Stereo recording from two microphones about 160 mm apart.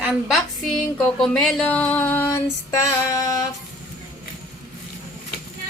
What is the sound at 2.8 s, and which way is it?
Music, 20° left (ahead or behind).